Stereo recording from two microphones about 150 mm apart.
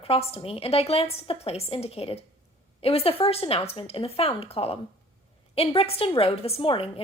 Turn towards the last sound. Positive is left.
turn(degrees=35)  # may be behind; listen again after turning